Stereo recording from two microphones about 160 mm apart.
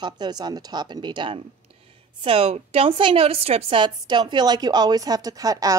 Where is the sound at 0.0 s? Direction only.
25° right (ahead or behind).